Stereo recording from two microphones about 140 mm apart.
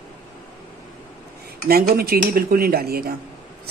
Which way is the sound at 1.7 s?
90° right.